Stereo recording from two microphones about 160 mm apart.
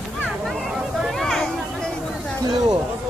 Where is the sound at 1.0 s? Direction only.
Centre (ahead or behind).